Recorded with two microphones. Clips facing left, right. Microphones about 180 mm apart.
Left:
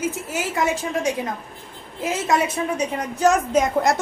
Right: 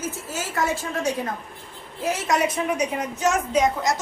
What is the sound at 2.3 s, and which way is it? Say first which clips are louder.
A woman's voice: left 1 dB; 30° left (ahead or behind).